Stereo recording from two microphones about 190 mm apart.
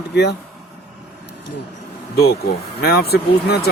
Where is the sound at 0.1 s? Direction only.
60° left (ahead or behind).